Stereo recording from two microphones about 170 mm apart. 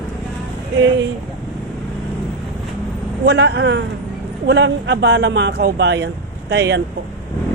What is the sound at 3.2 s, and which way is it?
Speech, 90° right.